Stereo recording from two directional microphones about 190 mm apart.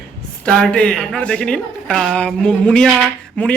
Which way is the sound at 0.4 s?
5° left (ahead or behind).